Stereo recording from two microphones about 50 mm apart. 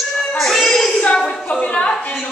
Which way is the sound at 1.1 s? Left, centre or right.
Centre.